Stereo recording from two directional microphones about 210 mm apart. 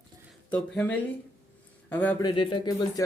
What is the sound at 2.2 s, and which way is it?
Speech, 20° left (ahead or behind).